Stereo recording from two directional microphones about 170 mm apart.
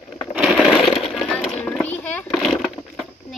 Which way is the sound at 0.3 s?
5° right (ahead or behind).